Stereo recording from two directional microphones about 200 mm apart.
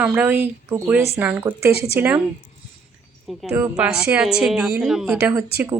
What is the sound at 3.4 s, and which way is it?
Speech, 5° right (ahead or behind).